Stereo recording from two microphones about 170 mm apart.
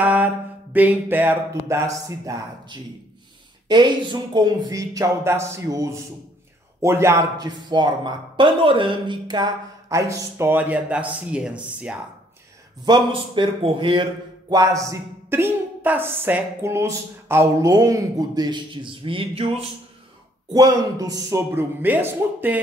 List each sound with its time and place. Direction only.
0.0 s mantra: 10° right (ahead or behind)
0.7 s a woman's voice: 10° right (ahead or behind)
12.8 s a woman's voice: 25° right (ahead or behind)
20.5 s a woman's voice: 20° right (ahead or behind)